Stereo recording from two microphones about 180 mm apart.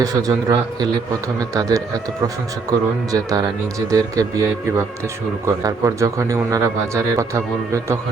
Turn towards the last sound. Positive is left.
turn(degrees=-15)  # may be behind; listen again after turning